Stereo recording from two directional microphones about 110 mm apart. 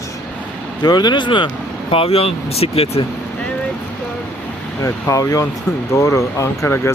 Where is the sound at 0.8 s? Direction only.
40° left (ahead or behind).